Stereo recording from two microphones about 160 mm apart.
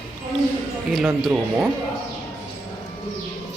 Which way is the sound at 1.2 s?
10° right (ahead or behind).